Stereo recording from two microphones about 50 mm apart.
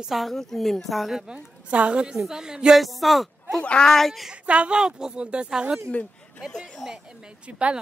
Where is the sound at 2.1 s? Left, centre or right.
Centre.